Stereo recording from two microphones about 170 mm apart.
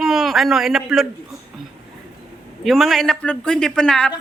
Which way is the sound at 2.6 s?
Centre (ahead or behind).